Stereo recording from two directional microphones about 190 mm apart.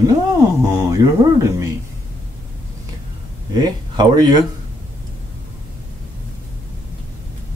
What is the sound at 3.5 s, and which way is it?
Speech, 20° right (ahead or behind).